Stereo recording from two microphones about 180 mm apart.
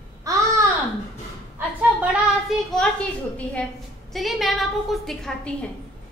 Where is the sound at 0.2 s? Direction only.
15° right (ahead or behind).